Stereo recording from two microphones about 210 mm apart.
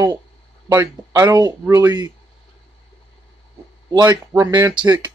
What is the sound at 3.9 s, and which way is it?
Speech, 15° right (ahead or behind).